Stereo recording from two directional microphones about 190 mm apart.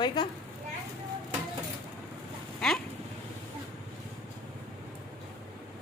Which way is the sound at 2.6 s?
5° left (ahead or behind).